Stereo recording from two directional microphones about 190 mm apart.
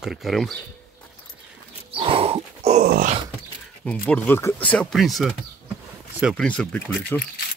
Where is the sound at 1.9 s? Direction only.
30° right (ahead or behind).